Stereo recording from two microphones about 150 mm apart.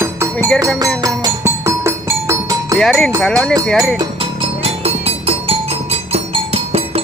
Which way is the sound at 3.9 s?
35° right (ahead or behind).